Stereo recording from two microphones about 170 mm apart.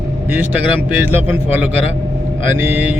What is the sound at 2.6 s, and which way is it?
Speech, 10° right (ahead or behind).